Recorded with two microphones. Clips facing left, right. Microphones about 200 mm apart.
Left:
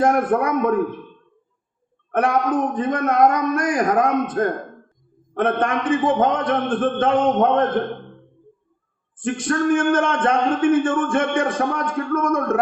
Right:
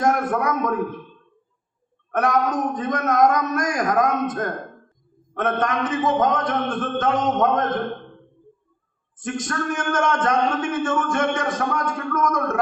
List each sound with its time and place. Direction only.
0.0 s a man's voice: 30° left (ahead or behind)
2.1 s a man's voice: 30° left (ahead or behind)
5.4 s a man's voice: 30° left (ahead or behind)
9.1 s speech: 30° left (ahead or behind)